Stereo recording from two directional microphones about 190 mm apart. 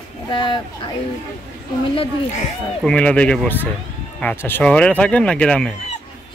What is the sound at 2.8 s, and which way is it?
A man's voice, 5° left (ahead or behind).